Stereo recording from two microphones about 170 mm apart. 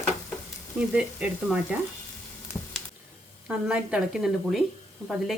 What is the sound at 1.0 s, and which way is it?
Speech, 5° right (ahead or behind).